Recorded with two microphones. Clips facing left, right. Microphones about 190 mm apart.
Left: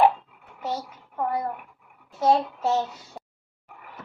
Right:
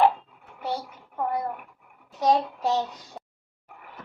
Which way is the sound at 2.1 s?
15° right (ahead or behind).